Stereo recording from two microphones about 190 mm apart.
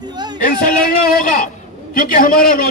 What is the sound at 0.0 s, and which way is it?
Music, 20° right (ahead or behind).